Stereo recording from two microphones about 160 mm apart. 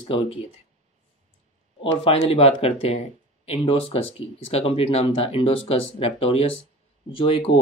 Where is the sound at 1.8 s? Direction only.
35° left (ahead or behind).